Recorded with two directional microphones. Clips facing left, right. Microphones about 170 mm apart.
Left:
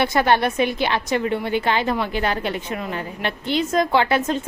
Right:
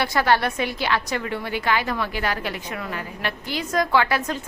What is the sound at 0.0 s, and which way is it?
A woman's voice, 20° left (ahead or behind).